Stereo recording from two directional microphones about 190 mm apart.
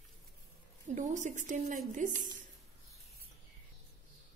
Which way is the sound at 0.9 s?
40° right (ahead or behind).